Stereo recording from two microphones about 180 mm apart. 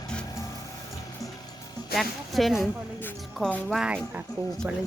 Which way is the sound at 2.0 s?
Centre (ahead or behind).